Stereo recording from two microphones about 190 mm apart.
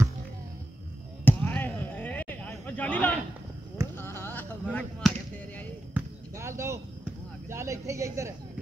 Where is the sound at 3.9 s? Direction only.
15° left (ahead or behind).